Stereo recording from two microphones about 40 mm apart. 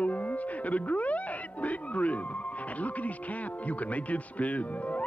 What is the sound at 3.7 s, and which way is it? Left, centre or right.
Speech, left.